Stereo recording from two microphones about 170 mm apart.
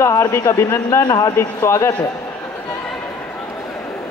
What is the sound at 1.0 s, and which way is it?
Speech, 25° left (ahead or behind).